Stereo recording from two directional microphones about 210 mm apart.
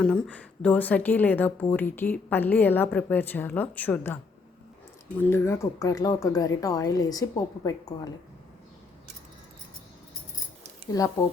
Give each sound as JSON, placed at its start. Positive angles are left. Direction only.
{"t": 0.0, "sound": "a woman's voice", "side_deg": 5}